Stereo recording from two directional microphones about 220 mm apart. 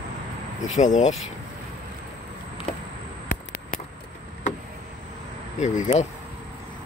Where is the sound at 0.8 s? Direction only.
35° left (ahead or behind).